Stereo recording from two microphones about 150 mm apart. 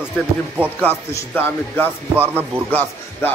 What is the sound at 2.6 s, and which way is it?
Speech, 10° left (ahead or behind).